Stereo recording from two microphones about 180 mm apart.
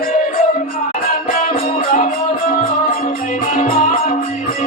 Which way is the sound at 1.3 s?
50° left (ahead or behind).